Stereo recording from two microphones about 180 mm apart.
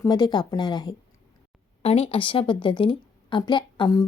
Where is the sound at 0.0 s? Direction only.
20° left (ahead or behind).